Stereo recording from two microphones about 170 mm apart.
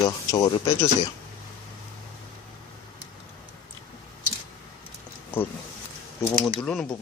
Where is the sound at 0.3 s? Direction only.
20° left (ahead or behind).